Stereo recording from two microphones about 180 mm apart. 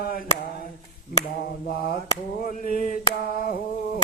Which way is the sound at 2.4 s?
50° left (ahead or behind).